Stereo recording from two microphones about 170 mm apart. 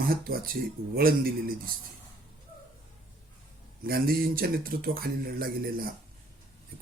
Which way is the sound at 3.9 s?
60° right (ahead or behind).